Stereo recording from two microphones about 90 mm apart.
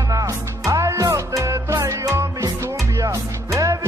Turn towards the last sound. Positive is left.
turn(degrees=-35)  # may be behind; listen again after turning